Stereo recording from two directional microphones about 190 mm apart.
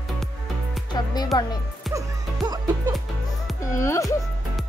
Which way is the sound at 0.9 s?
20° left (ahead or behind).